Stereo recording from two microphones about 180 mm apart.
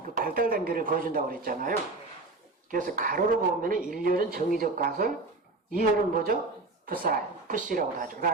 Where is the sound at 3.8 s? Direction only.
5° right (ahead or behind).